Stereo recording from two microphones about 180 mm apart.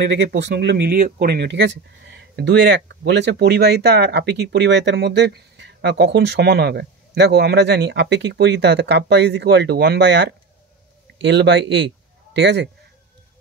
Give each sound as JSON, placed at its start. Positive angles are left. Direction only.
{"t": 0.0, "sound": "speech", "side_deg": -70}